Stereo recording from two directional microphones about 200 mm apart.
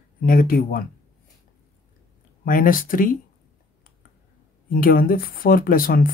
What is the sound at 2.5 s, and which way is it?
Speech, 45° left (ahead or behind).